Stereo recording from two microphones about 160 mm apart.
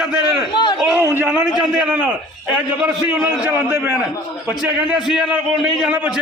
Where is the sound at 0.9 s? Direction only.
15° right (ahead or behind).